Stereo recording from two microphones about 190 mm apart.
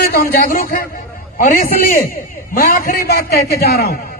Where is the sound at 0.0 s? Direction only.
50° left (ahead or behind).